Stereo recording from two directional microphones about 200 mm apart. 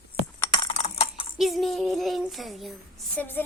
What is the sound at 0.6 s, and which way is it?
Typing, 30° left (ahead or behind).